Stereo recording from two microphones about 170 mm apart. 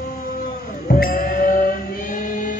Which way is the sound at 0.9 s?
55° left (ahead or behind).